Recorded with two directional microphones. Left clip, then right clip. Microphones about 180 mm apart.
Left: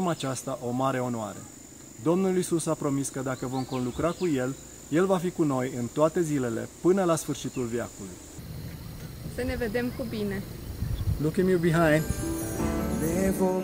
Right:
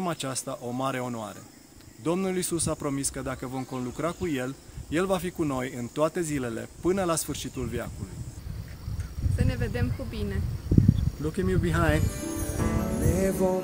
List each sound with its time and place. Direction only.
0.0 s speech: 20° right (ahead or behind)
9.4 s speech: 10° right (ahead or behind)
12.6 s music: centre (ahead or behind)